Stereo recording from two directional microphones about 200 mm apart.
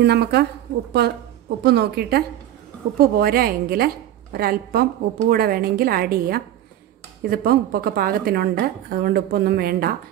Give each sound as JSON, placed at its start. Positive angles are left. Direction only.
{"t": 0.0, "sound": "a woman's voice", "side_deg": -55}